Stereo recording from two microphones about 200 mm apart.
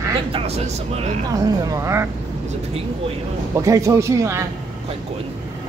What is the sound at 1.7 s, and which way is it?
Speech, 15° right (ahead or behind).